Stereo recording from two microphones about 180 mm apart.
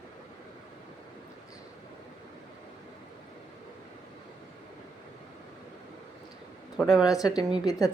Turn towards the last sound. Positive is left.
turn(degrees=20)  # may be behind; listen again after turning